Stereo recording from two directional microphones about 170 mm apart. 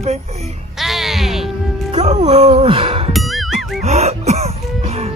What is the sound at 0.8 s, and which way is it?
Music, centre (ahead or behind).